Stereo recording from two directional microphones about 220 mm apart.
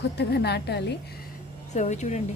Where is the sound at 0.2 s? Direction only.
50° left (ahead or behind).